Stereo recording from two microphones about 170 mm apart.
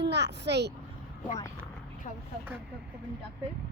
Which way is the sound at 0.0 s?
90° right.